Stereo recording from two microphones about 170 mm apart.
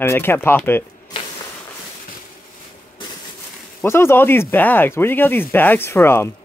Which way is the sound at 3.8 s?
15° left (ahead or behind).